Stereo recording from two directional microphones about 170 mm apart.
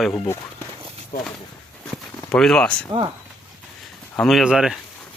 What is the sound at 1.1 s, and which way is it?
Speech, 60° left (ahead or behind).